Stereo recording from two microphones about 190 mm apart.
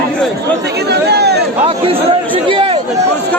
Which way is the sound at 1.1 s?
60° right (ahead or behind).